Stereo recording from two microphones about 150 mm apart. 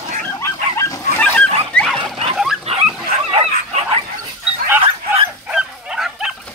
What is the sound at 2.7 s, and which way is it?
Dog, 45° right (ahead or behind).